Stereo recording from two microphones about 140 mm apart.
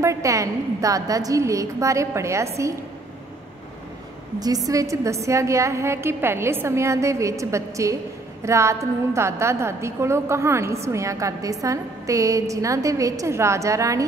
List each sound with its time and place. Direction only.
0.0 s a woman's voice: 20° right (ahead or behind)
4.6 s a woman's voice: 25° right (ahead or behind)